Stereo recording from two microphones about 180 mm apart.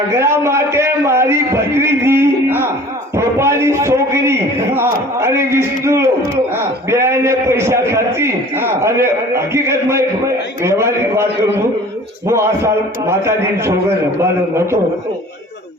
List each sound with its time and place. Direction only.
0.2 s a man's voice: 15° right (ahead or behind)
12.3 s a man's voice: 15° right (ahead or behind)